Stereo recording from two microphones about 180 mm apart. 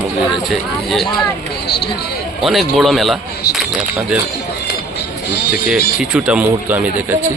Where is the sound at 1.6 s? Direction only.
65° left (ahead or behind).